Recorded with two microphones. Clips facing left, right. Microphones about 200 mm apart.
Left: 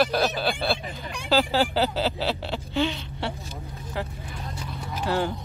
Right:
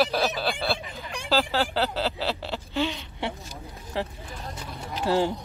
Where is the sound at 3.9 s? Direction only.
30° right (ahead or behind).